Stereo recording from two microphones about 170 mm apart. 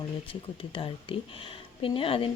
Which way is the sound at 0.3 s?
30° left (ahead or behind).